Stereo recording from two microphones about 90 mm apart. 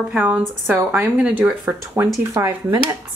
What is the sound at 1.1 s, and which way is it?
Speech, 15° right (ahead or behind).